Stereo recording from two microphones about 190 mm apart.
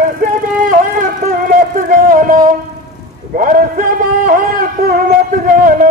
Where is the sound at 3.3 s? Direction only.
45° right (ahead or behind).